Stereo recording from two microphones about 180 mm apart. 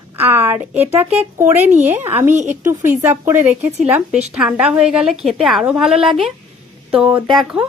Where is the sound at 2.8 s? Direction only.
15° right (ahead or behind).